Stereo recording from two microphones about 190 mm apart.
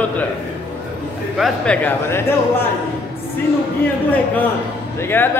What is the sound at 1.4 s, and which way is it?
Speech, 5° left (ahead or behind).